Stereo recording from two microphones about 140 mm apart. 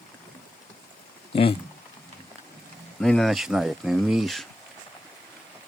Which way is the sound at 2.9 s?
5° left (ahead or behind).